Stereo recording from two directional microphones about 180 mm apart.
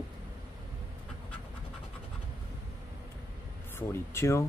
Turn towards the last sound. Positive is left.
turn(degrees=15)  # may be behind; listen again after turning